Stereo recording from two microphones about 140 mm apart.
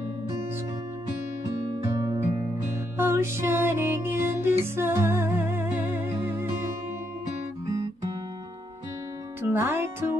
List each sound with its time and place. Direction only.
3.0 s music: 20° right (ahead or behind)
9.4 s music: 15° right (ahead or behind)